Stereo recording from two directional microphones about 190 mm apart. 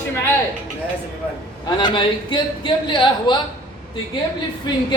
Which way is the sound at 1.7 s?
25° left (ahead or behind).